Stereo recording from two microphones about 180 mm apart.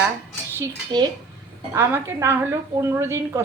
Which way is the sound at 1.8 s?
15° right (ahead or behind).